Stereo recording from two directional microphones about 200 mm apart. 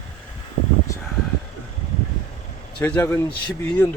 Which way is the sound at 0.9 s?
15° left (ahead or behind).